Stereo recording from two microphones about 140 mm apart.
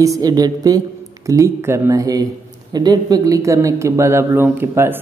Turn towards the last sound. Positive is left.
turn(degrees=-15)  # may be behind; listen again after turning